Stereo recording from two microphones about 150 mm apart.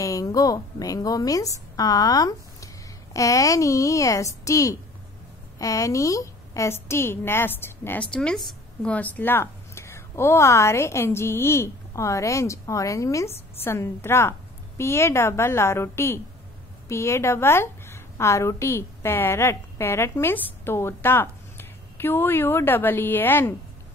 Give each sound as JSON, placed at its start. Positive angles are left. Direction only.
{"t": 0.0, "sound": "a woman's voice", "side_deg": 20}